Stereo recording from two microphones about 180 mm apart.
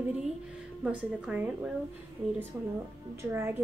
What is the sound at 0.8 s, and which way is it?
Speech, 5° right (ahead or behind).